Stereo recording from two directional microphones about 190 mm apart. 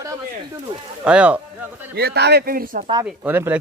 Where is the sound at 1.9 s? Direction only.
60° right (ahead or behind).